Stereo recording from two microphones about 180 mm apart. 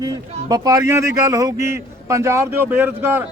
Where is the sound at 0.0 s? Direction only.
20° right (ahead or behind).